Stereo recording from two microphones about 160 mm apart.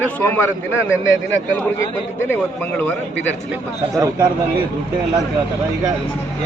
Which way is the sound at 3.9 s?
20° right (ahead or behind).